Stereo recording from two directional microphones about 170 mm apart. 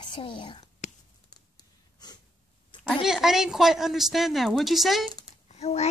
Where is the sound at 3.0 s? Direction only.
5° right (ahead or behind).